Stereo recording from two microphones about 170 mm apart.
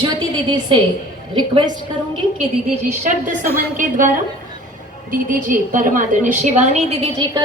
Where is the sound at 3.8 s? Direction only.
50° right (ahead or behind).